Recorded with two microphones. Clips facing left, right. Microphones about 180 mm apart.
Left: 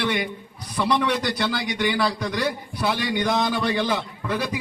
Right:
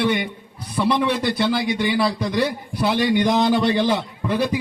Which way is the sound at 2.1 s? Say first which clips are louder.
Right 4 dB; 30° right (ahead or behind).